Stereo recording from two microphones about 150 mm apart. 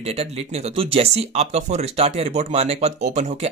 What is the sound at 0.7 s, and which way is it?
Speech, 40° right (ahead or behind).